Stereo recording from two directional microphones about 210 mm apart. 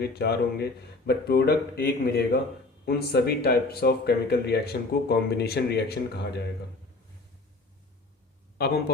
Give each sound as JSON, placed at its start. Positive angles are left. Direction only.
{"t": 0.0, "sound": "speech", "side_deg": 50}
{"t": 8.5, "sound": "a man's voice", "side_deg": 50}